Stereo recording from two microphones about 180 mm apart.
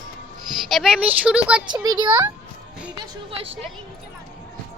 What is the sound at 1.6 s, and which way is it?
A child's voice, 20° right (ahead or behind).